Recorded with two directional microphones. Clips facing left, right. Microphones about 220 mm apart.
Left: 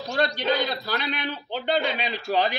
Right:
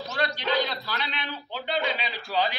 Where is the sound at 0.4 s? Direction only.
45° left (ahead or behind).